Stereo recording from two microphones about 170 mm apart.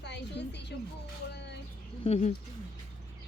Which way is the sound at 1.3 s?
85° left.